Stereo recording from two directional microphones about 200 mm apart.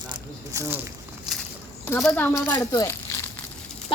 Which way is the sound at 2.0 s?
5° left (ahead or behind).